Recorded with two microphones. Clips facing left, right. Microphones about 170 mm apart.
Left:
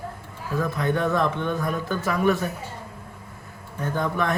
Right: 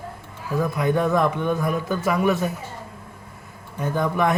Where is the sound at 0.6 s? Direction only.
15° right (ahead or behind).